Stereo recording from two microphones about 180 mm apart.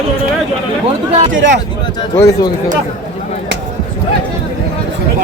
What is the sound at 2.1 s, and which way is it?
Speech, 15° left (ahead or behind).